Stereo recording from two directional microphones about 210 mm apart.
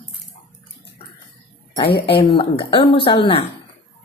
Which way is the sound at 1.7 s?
25° left (ahead or behind).